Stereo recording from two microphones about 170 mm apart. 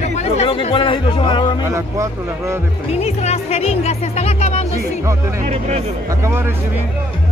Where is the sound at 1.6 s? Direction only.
15° right (ahead or behind).